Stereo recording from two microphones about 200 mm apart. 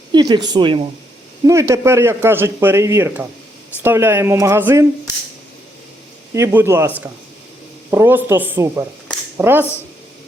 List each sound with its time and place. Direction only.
0.1 s a woman's voice: 20° right (ahead or behind)
6.3 s a man's voice: 10° right (ahead or behind)